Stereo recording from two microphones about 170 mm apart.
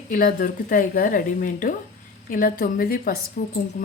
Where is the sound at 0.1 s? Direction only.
55° left (ahead or behind).